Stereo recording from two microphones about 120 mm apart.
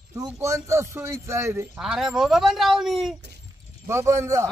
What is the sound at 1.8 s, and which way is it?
Speech, 5° right (ahead or behind).